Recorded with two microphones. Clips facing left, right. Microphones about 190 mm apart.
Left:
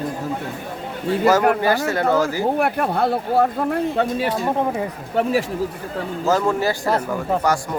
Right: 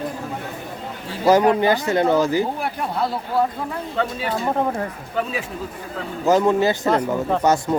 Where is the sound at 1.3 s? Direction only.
20° right (ahead or behind).